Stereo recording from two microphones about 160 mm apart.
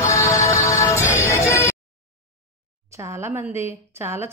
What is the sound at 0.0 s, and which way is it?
Music, 20° left (ahead or behind).